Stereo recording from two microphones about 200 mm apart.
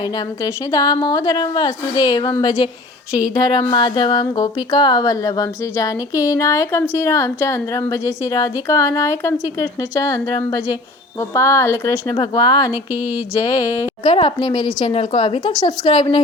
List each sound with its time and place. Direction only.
0.4 s speech: 20° left (ahead or behind)
3.1 s speech: 5° right (ahead or behind)
3.3 s a woman's voice: 20° left (ahead or behind)
14.1 s speech: 25° left (ahead or behind)